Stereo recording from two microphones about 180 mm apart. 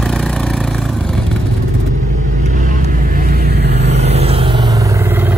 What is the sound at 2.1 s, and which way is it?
Vehicle, 45° right (ahead or behind).